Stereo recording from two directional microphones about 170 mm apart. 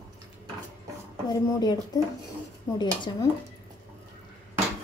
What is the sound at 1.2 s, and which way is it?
A woman's voice, 25° left (ahead or behind).